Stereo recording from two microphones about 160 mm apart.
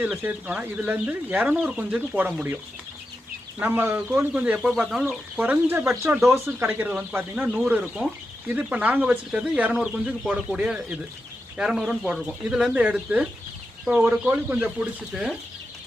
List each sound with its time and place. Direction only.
0.0 s speech: 10° right (ahead or behind)
3.6 s speech: 15° right (ahead or behind)